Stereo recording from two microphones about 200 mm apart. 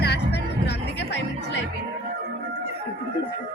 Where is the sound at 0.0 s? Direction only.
55° left (ahead or behind).